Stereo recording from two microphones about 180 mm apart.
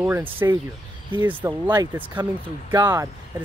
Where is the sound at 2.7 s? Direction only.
20° right (ahead or behind).